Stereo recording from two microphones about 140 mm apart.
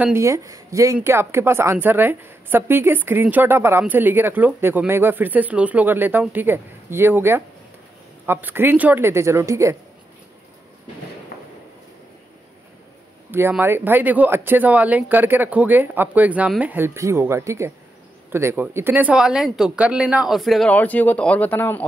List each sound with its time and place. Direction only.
0.0 s a woman's voice: 20° right (ahead or behind)
13.3 s a woman's voice: 15° right (ahead or behind)
20.7 s speech: 10° left (ahead or behind)